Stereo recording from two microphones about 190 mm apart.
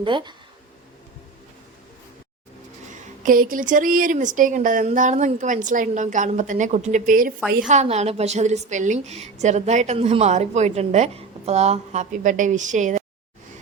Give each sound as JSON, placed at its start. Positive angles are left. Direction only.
{"t": 0.0, "sound": "speech", "side_deg": -25}
{"t": 3.2, "sound": "speech", "side_deg": -45}
{"t": 7.7, "sound": "a woman's voice", "side_deg": -35}